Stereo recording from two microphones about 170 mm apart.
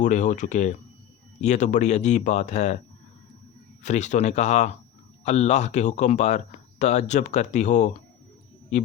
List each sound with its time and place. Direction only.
0.0 s speech: 45° left (ahead or behind)
3.8 s speech: 45° left (ahead or behind)